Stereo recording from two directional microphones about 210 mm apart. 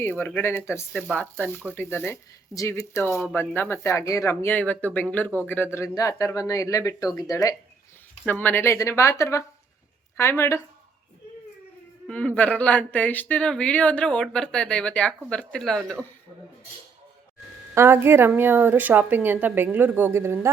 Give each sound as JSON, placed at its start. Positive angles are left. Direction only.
{"t": 0.0, "sound": "speech", "side_deg": 10}
{"t": 12.0, "sound": "speech", "side_deg": 5}
{"t": 17.7, "sound": "a woman's voice", "side_deg": -10}